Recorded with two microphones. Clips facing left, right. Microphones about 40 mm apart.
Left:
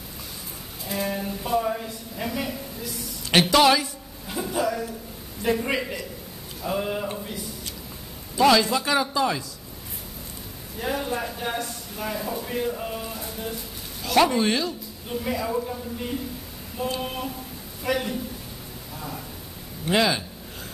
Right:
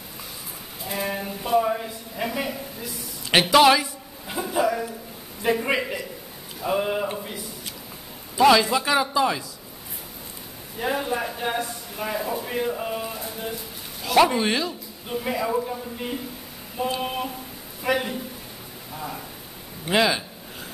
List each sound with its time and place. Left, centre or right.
0.8 s a sound: centre
5.4 s a man's voice: centre
10.8 s a man's voice: centre